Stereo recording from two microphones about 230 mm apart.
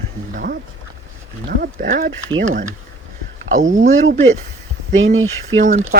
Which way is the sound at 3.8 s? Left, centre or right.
Right.